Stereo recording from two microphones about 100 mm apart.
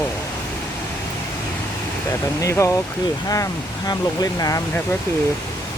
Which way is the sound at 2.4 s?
30° left (ahead or behind).